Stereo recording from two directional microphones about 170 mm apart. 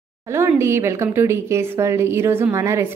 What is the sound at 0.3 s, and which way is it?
A woman's voice, 15° right (ahead or behind).